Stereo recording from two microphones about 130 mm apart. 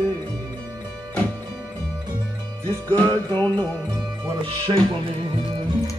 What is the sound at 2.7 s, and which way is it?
Music, 15° left (ahead or behind).